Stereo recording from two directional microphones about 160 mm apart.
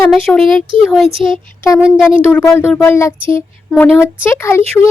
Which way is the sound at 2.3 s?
15° left (ahead or behind).